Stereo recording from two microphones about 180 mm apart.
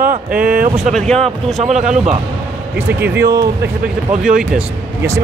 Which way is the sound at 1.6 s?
40° right (ahead or behind).